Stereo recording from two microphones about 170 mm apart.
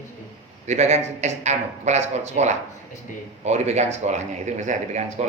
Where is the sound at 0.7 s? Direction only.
40° right (ahead or behind).